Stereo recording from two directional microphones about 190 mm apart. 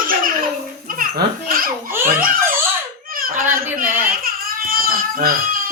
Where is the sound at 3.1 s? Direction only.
50° right (ahead or behind).